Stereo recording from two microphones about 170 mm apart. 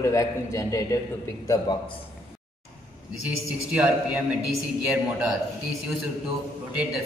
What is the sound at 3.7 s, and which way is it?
A man's voice, 5° right (ahead or behind).